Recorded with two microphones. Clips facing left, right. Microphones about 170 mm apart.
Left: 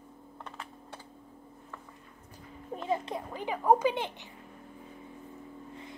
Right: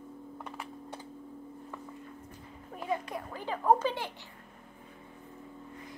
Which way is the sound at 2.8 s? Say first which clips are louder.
Left 2 dB; 25° left (ahead or behind).